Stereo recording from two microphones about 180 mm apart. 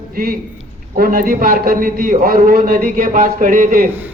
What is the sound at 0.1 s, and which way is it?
A man's voice, 55° right (ahead or behind).